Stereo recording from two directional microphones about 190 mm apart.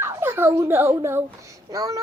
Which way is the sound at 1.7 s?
15° right (ahead or behind).